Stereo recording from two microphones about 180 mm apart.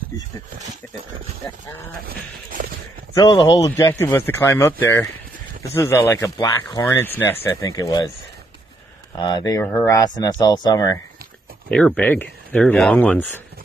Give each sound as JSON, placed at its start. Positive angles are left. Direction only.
{"t": 3.2, "sound": "speech", "side_deg": 20}
{"t": 9.2, "sound": "speech", "side_deg": 20}
{"t": 11.7, "sound": "speech", "side_deg": 5}